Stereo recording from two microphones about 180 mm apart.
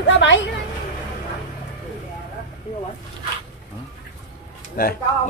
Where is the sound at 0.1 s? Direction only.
90° left.